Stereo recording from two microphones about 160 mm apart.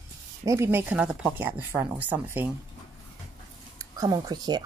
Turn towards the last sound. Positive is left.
turn(degrees=-25)  # may be behind; listen again after turning